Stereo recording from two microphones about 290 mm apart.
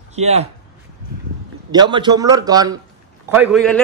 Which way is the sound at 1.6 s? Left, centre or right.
Centre.